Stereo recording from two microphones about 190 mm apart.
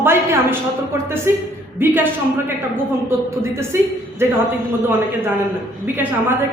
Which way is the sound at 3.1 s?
15° right (ahead or behind).